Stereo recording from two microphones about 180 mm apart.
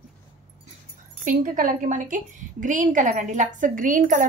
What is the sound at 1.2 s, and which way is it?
A woman's voice, 45° right (ahead or behind).